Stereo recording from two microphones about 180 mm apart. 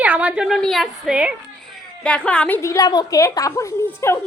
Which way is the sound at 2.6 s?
20° left (ahead or behind).